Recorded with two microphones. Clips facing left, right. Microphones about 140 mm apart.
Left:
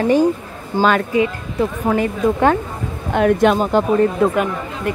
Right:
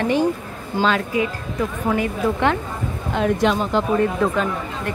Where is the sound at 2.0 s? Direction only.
40° left (ahead or behind).